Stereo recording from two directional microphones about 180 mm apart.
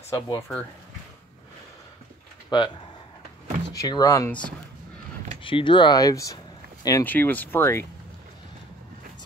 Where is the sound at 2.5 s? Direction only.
25° left (ahead or behind).